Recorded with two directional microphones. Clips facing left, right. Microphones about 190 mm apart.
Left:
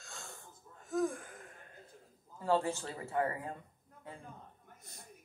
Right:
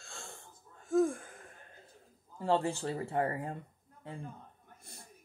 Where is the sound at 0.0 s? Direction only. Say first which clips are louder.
Right 1 dB; 30° right (ahead or behind).